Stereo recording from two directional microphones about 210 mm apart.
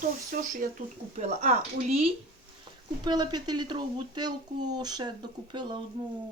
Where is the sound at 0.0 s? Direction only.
40° right (ahead or behind).